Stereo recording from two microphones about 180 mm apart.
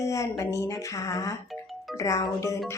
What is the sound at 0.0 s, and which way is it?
A woman's voice, 15° left (ahead or behind).